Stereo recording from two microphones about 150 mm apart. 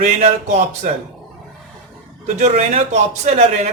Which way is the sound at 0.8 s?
55° right (ahead or behind).